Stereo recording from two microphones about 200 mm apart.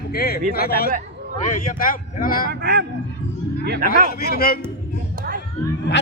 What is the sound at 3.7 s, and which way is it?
Speech, 45° right (ahead or behind).